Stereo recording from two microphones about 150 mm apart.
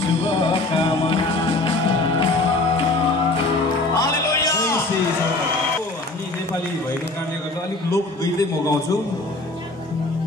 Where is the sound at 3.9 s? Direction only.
25° left (ahead or behind).